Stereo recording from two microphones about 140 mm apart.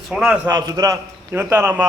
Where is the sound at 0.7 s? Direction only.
25° right (ahead or behind).